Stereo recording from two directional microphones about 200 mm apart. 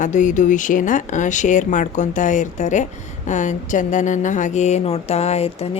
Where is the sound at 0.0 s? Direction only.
40° left (ahead or behind).